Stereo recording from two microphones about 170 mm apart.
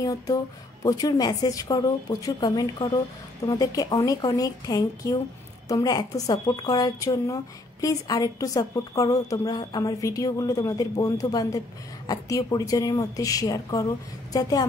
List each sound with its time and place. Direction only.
0.0 s a woman's voice: 20° left (ahead or behind)